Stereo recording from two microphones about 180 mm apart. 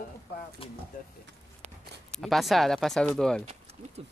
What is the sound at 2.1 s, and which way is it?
Speech, centre (ahead or behind).